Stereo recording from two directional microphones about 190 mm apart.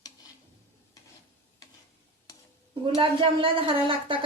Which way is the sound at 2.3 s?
20° left (ahead or behind).